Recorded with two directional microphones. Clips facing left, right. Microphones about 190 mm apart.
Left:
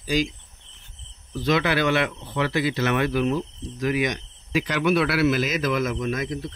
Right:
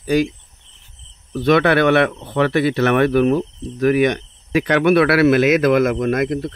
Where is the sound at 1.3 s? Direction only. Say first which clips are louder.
Right 8 dB; 60° right (ahead or behind).